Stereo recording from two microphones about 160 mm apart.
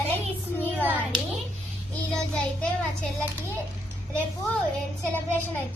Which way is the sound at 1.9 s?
5° left (ahead or behind).